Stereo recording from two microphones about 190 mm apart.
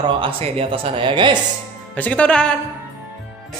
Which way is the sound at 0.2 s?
30° right (ahead or behind).